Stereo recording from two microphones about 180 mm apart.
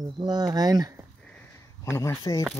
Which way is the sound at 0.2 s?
20° right (ahead or behind).